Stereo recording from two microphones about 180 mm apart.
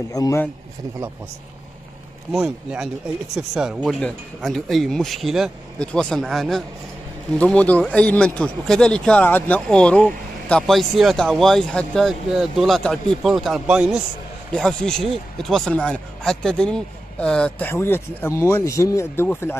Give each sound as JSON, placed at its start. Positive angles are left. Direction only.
{"t": 0.1, "sound": "speech", "side_deg": 20}
{"t": 2.3, "sound": "a man's voice", "side_deg": -5}